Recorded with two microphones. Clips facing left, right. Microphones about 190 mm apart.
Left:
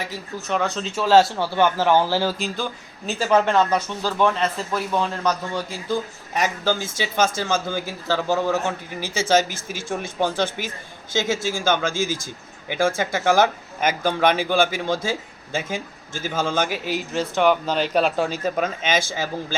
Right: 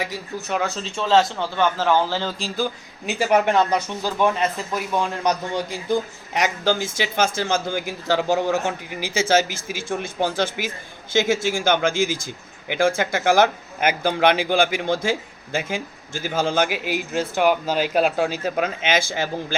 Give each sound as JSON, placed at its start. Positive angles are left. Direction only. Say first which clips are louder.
{"t": 0.0, "sound": "a man's voice", "louder": "right 2 dB", "side_deg": -10}
{"t": 3.1, "sound": "speech", "louder": "even", "side_deg": -15}